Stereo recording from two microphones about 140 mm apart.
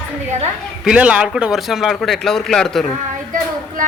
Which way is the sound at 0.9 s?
10° right (ahead or behind).